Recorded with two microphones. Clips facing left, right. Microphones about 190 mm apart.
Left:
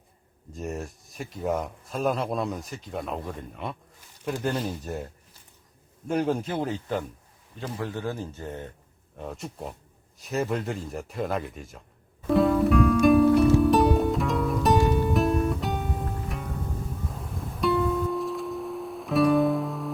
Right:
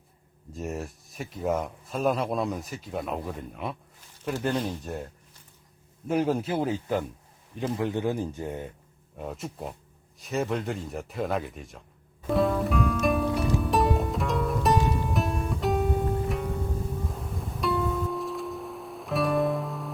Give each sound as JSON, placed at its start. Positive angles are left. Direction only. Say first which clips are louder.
{"t": 0.5, "sound": "speech", "louder": "even", "side_deg": 0}
{"t": 6.1, "sound": "a man's voice", "louder": "right 1 dB", "side_deg": 0}
{"t": 12.3, "sound": "music", "louder": "left 4 dB", "side_deg": 0}